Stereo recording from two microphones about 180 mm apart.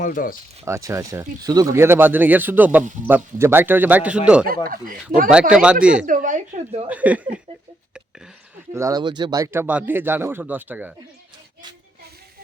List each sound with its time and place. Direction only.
0.0 s speech: 50° left (ahead or behind)
0.6 s speech: 15° right (ahead or behind)
4.4 s speech: 55° right (ahead or behind)
5.3 s speech: 5° right (ahead or behind)
6.1 s speech: 50° right (ahead or behind)
6.8 s speech: 10° right (ahead or behind)
8.7 s speech: 20° right (ahead or behind)